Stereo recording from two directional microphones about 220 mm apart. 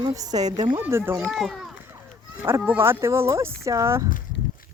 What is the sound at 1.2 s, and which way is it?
Speech, centre (ahead or behind).